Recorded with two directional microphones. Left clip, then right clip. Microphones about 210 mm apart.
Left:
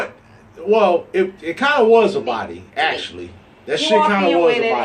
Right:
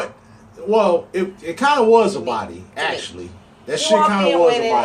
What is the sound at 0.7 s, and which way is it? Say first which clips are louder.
A man's voice: left 1 dB; 15° left (ahead or behind).